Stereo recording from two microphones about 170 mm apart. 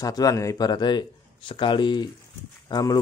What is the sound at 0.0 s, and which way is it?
Speech, 20° left (ahead or behind).